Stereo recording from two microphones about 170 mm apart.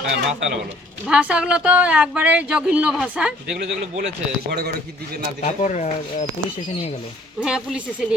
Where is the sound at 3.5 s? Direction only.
60° right (ahead or behind).